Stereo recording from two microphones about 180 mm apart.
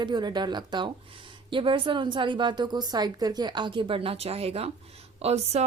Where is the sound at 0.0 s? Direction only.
25° right (ahead or behind).